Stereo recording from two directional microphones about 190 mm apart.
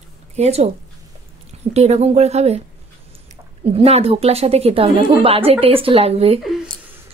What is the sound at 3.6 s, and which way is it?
A woman's voice, 30° right (ahead or behind).